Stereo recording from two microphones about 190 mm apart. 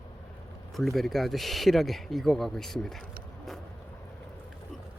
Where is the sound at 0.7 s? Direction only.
Centre (ahead or behind).